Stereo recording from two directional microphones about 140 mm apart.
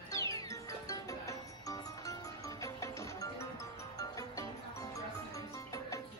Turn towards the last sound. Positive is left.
turn(degrees=25)  # may be behind; listen again after turning